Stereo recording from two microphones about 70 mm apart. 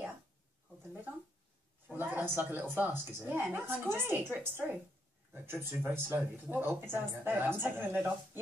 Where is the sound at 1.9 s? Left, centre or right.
Right.